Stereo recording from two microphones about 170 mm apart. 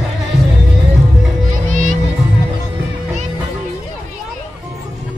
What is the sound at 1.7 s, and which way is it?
Music, 50° right (ahead or behind).